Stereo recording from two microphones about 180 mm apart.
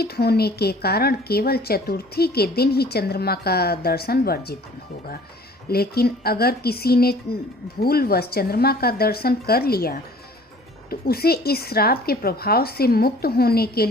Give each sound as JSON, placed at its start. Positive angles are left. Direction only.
{"t": 0.0, "sound": "a woman's voice", "side_deg": 60}
{"t": 5.6, "sound": "a woman's voice", "side_deg": 60}